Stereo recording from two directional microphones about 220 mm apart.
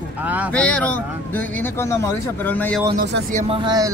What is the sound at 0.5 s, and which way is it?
Speech, 5° left (ahead or behind).